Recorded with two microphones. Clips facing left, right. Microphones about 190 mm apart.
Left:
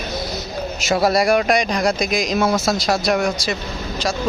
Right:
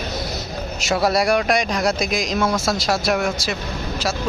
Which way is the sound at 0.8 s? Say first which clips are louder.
Left 2 dB; centre (ahead or behind).